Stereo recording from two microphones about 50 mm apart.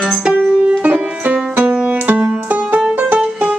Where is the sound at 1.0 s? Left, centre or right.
Right.